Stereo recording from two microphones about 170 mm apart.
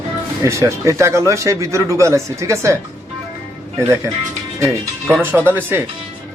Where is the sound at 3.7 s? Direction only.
15° right (ahead or behind).